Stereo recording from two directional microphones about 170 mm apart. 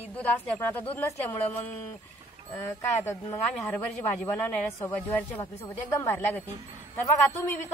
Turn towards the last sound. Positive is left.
turn(degrees=15)  # may be behind; listen again after turning